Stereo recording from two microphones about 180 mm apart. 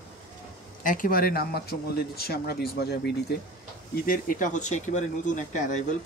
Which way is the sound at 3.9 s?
50° left (ahead or behind).